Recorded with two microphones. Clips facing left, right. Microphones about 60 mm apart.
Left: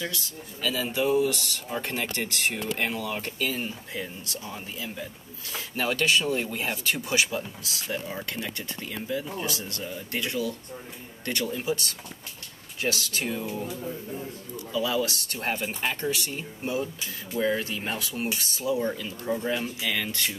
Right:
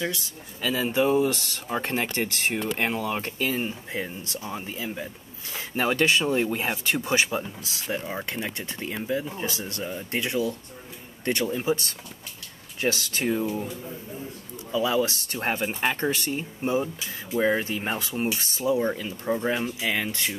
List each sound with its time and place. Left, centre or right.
0.0 s speech: centre
14.7 s speech: right